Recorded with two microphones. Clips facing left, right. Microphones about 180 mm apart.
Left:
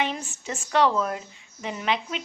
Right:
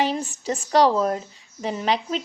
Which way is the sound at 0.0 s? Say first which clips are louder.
Right 5 dB; 35° right (ahead or behind).